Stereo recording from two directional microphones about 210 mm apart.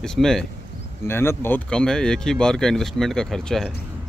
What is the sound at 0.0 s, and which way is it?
Speech, centre (ahead or behind).